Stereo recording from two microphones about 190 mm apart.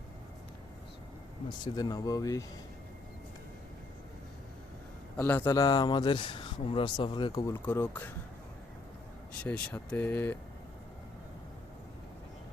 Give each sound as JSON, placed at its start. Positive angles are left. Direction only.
{"t": 1.6, "sound": "speech", "side_deg": 20}
{"t": 5.1, "sound": "speech", "side_deg": 10}
{"t": 9.4, "sound": "speech", "side_deg": 5}